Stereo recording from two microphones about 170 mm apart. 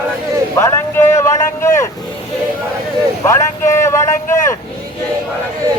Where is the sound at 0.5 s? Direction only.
15° left (ahead or behind).